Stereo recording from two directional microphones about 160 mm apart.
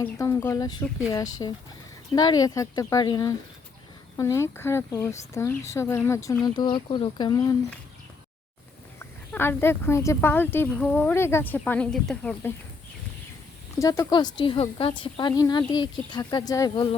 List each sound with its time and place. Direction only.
0.0 s speech: 20° left (ahead or behind)
9.0 s speech: 15° left (ahead or behind)
13.7 s speech: 20° left (ahead or behind)